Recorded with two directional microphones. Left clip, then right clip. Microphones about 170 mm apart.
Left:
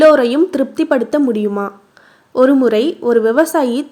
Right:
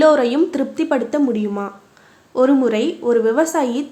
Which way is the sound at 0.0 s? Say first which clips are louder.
Left 4 dB; 25° left (ahead or behind).